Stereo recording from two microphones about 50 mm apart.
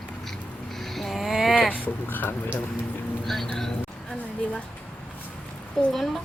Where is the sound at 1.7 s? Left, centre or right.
Left.